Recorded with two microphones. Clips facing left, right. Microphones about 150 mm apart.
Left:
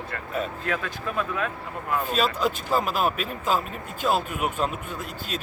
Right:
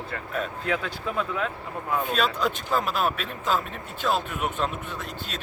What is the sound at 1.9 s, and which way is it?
Speech, 5° left (ahead or behind).